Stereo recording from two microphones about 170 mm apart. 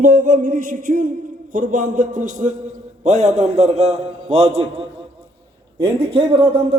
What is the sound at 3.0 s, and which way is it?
Speech, 40° right (ahead or behind).